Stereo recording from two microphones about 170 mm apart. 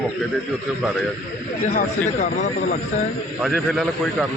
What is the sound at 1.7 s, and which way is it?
Speech, 45° left (ahead or behind).